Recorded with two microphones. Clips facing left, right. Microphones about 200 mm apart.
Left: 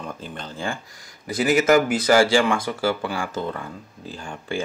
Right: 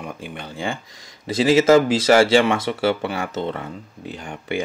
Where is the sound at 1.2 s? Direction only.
25° right (ahead or behind).